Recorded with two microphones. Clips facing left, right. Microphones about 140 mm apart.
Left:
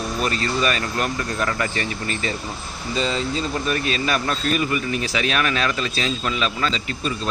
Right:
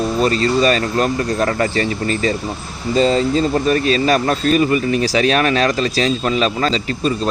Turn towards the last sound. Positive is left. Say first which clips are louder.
# right 7 dB
turn(degrees=-40)  # may be behind; listen again after turning